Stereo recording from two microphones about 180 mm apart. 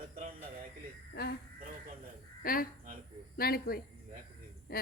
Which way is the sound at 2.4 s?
55° left (ahead or behind).